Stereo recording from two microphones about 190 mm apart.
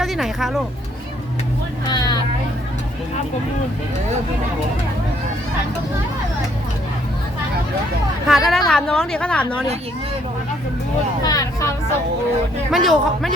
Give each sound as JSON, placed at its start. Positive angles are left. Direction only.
{"t": 0.0, "sound": "speech", "side_deg": 0}
{"t": 1.9, "sound": "speech", "side_deg": 20}
{"t": 8.3, "sound": "speech", "side_deg": 0}
{"t": 11.2, "sound": "speech", "side_deg": 20}
{"t": 12.7, "sound": "speech", "side_deg": 0}